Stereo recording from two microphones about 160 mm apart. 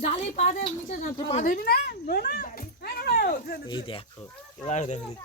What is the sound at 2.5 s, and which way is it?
Speech, 65° left (ahead or behind).